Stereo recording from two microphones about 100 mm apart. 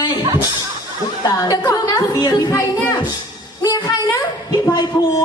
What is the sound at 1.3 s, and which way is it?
A woman's voice, 35° left (ahead or behind).